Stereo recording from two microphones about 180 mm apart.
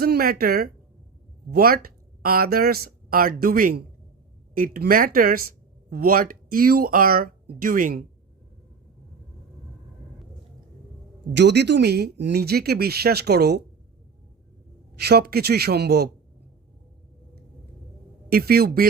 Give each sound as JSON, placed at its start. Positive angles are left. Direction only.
{"t": 0.0, "sound": "speech", "side_deg": -55}
{"t": 11.3, "sound": "speech", "side_deg": -70}
{"t": 14.9, "sound": "speech", "side_deg": -60}
{"t": 18.3, "sound": "speech", "side_deg": -55}